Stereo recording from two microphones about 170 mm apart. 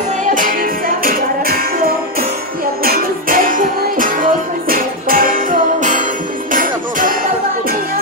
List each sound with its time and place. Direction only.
0.3 s music: 50° right (ahead or behind)